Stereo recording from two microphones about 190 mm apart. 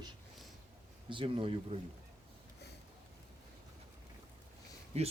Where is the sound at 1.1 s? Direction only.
25° right (ahead or behind).